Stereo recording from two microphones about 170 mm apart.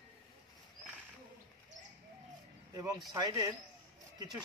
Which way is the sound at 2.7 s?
20° right (ahead or behind).